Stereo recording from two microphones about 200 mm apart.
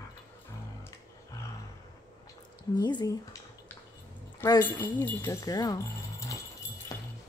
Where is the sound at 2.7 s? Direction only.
20° left (ahead or behind).